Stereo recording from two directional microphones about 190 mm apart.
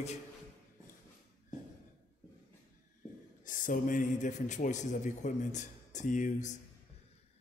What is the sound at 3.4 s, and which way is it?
Speech, 45° left (ahead or behind).